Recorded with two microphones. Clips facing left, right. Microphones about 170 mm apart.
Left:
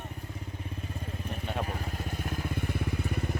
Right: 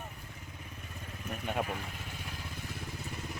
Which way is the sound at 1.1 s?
35° left (ahead or behind).